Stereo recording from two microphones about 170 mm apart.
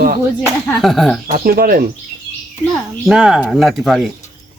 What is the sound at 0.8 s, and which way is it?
Speech, centre (ahead or behind).